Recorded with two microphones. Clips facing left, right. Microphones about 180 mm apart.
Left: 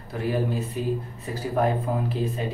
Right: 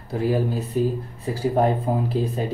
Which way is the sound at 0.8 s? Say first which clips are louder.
Right 8 dB; 40° right (ahead or behind).